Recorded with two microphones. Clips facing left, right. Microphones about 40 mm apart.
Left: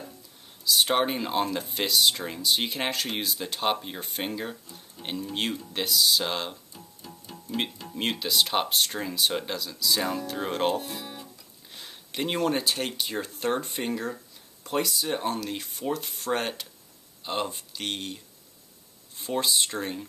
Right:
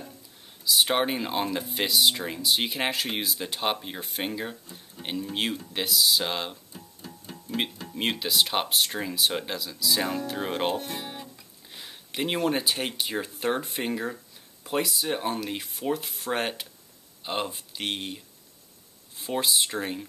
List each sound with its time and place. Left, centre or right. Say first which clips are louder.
0.7 s speech: even; centre
7.2 s music: right 1 dB; centre
7.9 s speech: even; centre
10.8 s speech: right 2 dB; right
11.7 s speech: right 1 dB; centre